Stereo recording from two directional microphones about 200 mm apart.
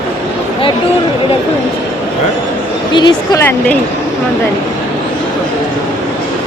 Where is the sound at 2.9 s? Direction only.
20° left (ahead or behind).